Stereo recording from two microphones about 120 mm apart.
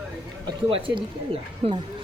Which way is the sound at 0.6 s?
45° right (ahead or behind).